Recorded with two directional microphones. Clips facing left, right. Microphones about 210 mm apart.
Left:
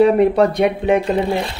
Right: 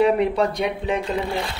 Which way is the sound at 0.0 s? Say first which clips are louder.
Left 6 dB; 45° left (ahead or behind).